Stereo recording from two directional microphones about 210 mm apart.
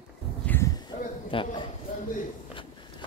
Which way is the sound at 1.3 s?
25° left (ahead or behind).